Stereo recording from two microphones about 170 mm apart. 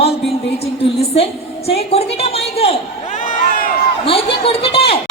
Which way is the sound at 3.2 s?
50° left (ahead or behind).